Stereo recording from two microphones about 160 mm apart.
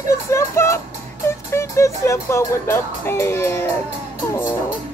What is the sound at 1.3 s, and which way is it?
Speech, 15° left (ahead or behind).